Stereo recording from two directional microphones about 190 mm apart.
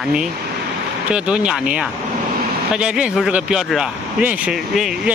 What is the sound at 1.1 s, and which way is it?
Speech, 5° right (ahead or behind).